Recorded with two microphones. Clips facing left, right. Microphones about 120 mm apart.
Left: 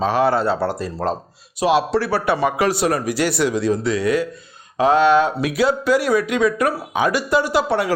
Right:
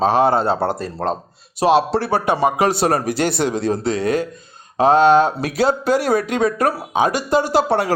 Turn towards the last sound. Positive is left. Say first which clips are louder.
# right 2 dB
turn(degrees=-35)  # may be behind; listen again after turning